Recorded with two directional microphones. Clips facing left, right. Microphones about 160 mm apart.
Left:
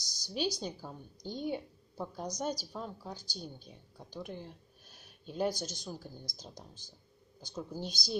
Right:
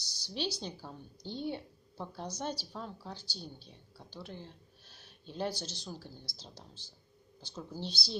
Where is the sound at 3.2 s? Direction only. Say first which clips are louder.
Left 2 dB; 45° left (ahead or behind).